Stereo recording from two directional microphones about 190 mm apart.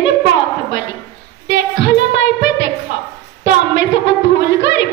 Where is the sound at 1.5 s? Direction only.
70° left (ahead or behind).